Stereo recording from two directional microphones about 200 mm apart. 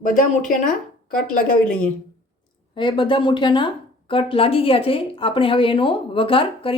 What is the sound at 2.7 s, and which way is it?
A woman's voice, 25° left (ahead or behind).